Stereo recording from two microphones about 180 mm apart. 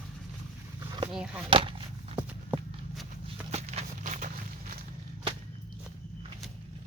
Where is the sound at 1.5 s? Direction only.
30° right (ahead or behind).